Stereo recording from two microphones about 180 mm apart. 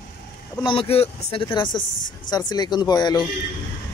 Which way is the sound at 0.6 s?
30° left (ahead or behind).